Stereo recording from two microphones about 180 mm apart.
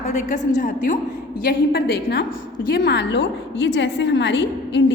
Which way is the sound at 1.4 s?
60° left (ahead or behind).